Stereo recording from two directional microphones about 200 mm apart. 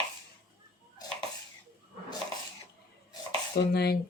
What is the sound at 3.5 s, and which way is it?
Speech, 55° left (ahead or behind).